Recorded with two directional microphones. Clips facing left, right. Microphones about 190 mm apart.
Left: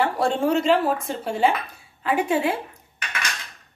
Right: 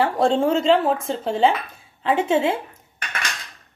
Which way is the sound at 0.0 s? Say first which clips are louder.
Right 3 dB; 30° right (ahead or behind).